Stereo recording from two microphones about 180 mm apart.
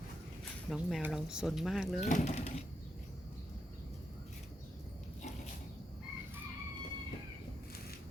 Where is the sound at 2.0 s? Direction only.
40° left (ahead or behind).